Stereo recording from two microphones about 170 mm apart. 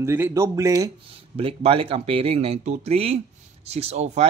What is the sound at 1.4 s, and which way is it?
Speech, 35° right (ahead or behind).